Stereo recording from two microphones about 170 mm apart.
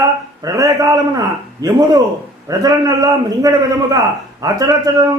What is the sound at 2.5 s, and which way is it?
A man's voice, 20° right (ahead or behind).